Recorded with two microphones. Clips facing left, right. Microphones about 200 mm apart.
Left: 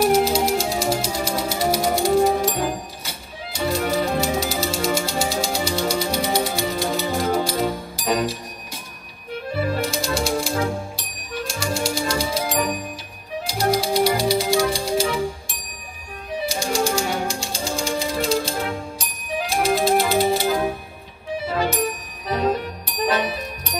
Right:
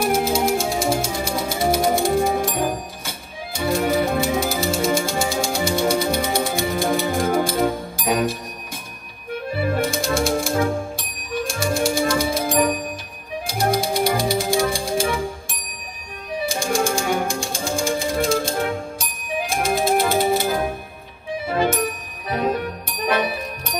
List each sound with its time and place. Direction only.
0.0 s music: 50° right (ahead or behind)
10.0 s music: 50° right (ahead or behind)
16.4 s music: 50° right (ahead or behind)
21.5 s music: 50° right (ahead or behind)
22.8 s music: 50° right (ahead or behind)